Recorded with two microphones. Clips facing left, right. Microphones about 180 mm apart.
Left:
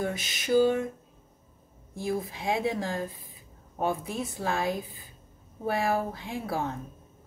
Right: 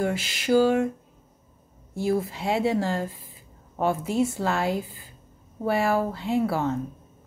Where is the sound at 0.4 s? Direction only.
90° right.